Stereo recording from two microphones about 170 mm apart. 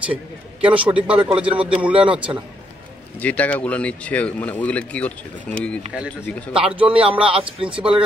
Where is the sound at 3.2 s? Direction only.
10° left (ahead or behind).